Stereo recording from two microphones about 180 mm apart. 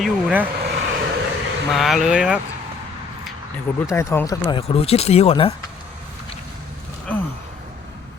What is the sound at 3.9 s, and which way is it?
Speech, 15° left (ahead or behind).